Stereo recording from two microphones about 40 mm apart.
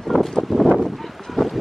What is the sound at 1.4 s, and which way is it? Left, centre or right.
Boat, centre.